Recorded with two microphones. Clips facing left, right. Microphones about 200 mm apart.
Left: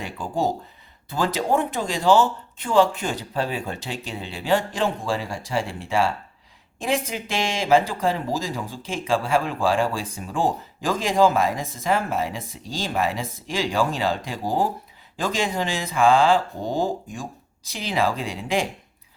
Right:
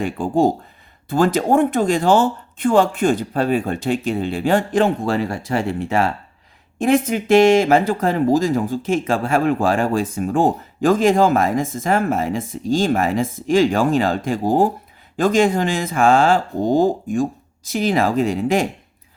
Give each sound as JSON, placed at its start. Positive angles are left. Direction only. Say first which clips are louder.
{"t": 0.0, "sound": "speech", "louder": "right 8 dB", "side_deg": -50}